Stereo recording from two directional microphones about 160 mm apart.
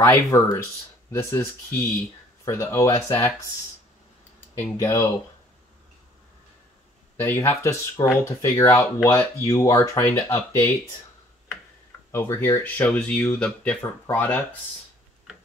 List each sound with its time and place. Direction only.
0.0 s speech: 20° left (ahead or behind)
4.6 s speech: 15° left (ahead or behind)
7.2 s speech: 15° left (ahead or behind)
12.1 s speech: 15° left (ahead or behind)